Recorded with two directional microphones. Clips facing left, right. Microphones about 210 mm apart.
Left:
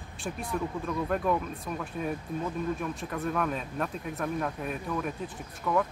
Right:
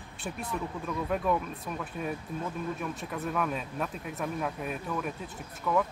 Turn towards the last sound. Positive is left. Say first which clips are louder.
# even
turn(degrees=5)  # may be behind; listen again after turning